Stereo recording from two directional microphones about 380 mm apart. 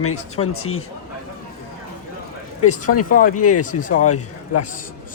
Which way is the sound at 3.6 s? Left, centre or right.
Centre.